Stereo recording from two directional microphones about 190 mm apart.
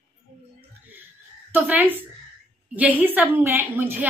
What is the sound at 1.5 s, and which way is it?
A woman's voice, 10° right (ahead or behind).